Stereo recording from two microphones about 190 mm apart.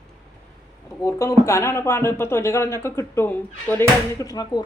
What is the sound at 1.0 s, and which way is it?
Speech, 15° left (ahead or behind).